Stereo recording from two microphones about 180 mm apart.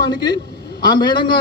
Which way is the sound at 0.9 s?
25° left (ahead or behind).